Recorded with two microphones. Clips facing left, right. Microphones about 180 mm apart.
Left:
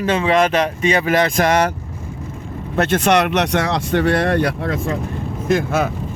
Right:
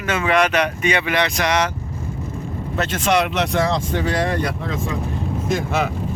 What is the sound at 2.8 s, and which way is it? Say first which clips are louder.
Speech: left 4 dB; 60° left (ahead or behind).